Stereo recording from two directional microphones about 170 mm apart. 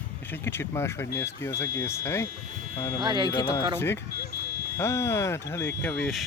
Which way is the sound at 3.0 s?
25° right (ahead or behind).